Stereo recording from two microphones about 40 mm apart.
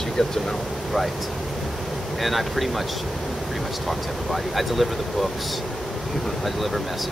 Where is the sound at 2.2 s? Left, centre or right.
Centre.